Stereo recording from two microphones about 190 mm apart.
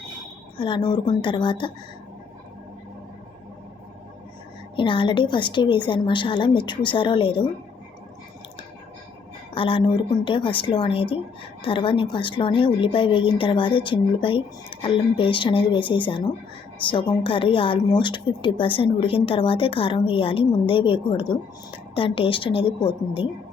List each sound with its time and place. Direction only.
0.5 s a woman's voice: 25° left (ahead or behind)
4.8 s a woman's voice: 25° left (ahead or behind)
9.6 s a woman's voice: 30° left (ahead or behind)